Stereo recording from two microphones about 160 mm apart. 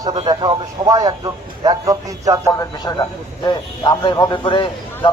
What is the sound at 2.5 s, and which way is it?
A man's voice, 20° left (ahead or behind).